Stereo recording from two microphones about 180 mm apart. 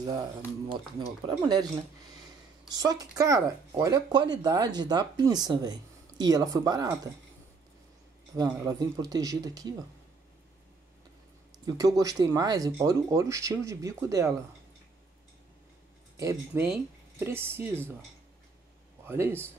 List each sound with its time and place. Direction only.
1.0 s speech: 30° right (ahead or behind)
2.7 s speech: 20° right (ahead or behind)
8.4 s speech: 20° right (ahead or behind)
11.6 s speech: 20° right (ahead or behind)
16.2 s speech: 20° right (ahead or behind)
19.0 s speech: 15° right (ahead or behind)